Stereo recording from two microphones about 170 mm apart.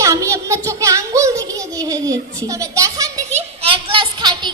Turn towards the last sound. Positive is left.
turn(degrees=-25)  # may be behind; listen again after turning